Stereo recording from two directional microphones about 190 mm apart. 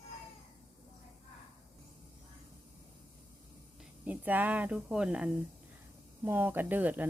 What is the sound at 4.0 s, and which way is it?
Speech, 10° right (ahead or behind).